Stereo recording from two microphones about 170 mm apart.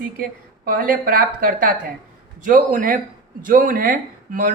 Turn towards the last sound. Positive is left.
turn(degrees=-55)  # may be behind; listen again after turning